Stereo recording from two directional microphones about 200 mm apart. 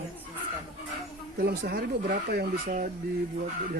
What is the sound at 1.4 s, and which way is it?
Speech, 50° right (ahead or behind).